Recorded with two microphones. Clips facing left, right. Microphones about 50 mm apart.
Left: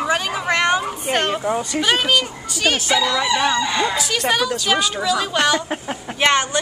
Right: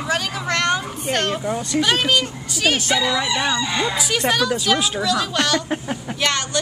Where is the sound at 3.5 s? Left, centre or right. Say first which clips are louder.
Left 2 dB; left.